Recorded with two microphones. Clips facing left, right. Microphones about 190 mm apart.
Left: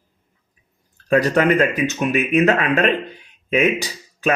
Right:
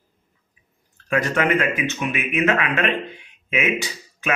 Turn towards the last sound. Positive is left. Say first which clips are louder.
# left 5 dB
turn(degrees=35)  # may be behind; listen again after turning